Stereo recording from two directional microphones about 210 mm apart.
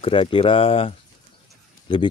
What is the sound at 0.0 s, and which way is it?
Speech, 25° left (ahead or behind).